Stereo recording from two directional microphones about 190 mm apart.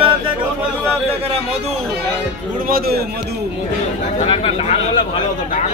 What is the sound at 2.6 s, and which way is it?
Speech, 50° right (ahead or behind).